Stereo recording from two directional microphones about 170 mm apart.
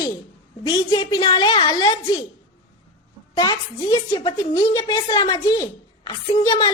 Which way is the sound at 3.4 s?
25° left (ahead or behind).